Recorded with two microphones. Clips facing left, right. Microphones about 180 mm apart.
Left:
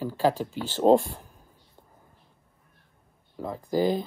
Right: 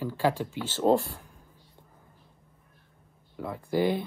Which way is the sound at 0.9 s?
15° left (ahead or behind).